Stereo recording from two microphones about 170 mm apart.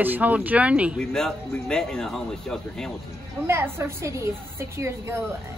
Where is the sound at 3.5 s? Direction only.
15° right (ahead or behind).